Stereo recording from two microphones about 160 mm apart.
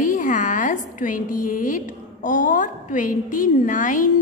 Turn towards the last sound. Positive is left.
turn(degrees=55)  # may be behind; listen again after turning